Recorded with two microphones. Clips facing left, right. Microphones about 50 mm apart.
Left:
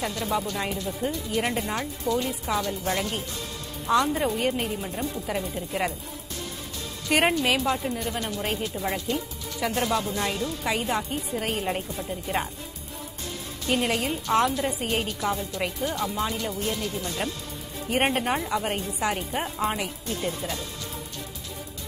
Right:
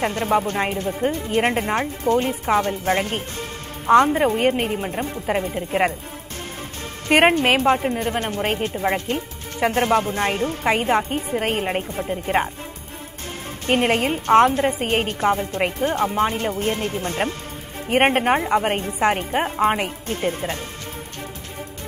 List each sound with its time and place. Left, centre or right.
0.0 s speech: right
7.1 s speech: right
13.7 s speech: right